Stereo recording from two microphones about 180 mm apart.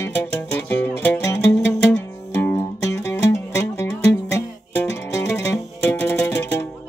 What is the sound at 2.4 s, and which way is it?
Music, 20° left (ahead or behind).